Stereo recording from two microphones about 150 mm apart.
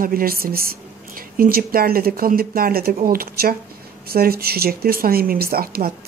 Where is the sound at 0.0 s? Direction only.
75° right (ahead or behind).